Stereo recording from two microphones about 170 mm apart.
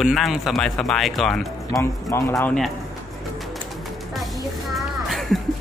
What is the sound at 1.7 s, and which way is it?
Speech, 15° left (ahead or behind).